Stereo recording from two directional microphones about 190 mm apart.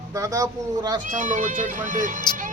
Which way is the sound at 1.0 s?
40° right (ahead or behind).